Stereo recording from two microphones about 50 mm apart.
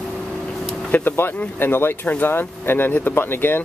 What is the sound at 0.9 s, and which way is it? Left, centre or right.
Speech, left.